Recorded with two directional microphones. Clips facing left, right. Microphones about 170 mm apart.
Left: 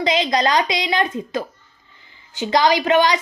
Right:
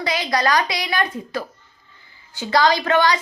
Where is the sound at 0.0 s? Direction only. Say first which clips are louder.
Left 3 dB; 20° left (ahead or behind).